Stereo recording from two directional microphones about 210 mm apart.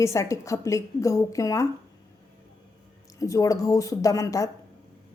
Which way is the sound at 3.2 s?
15° left (ahead or behind).